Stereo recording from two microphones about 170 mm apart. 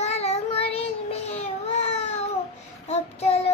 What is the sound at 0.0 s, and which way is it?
Child singing, 40° left (ahead or behind).